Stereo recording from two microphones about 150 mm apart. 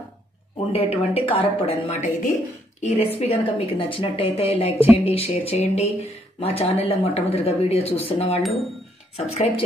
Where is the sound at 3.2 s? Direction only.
40° left (ahead or behind).